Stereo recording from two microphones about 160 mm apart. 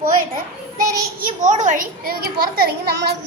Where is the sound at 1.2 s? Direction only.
50° right (ahead or behind); by 3.1 s 90° right.